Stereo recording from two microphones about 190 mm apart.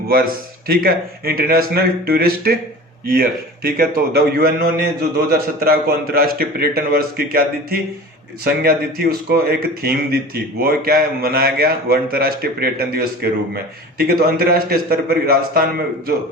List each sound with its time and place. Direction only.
0.1 s a man's voice: 50° right (ahead or behind)